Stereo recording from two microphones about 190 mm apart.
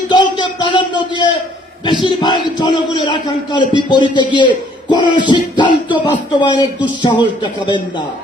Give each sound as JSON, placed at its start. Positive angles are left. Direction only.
{"t": 0.1, "sound": "a man's voice", "side_deg": 25}